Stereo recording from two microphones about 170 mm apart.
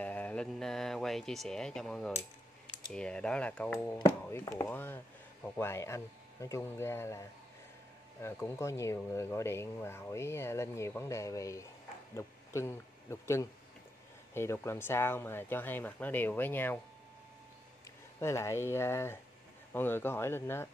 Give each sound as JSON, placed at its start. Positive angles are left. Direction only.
{"t": 0.0, "sound": "speech", "side_deg": 10}
{"t": 18.2, "sound": "speech", "side_deg": 15}